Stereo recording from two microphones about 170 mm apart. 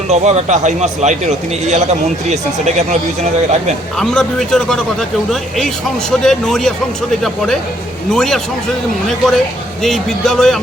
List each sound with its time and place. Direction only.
0.1 s a man's voice: 40° right (ahead or behind)
3.9 s a man's voice: 5° left (ahead or behind)